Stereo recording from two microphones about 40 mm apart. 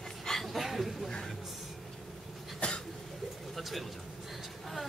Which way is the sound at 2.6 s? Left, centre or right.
Left.